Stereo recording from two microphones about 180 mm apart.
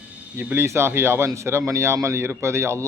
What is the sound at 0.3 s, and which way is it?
Speech, 10° right (ahead or behind).